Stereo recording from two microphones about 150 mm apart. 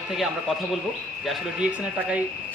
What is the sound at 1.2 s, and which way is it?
Speech, 10° right (ahead or behind).